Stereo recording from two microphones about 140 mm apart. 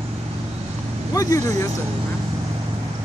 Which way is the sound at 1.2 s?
25° left (ahead or behind).